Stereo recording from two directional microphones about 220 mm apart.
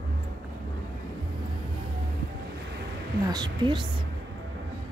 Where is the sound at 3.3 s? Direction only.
20° right (ahead or behind).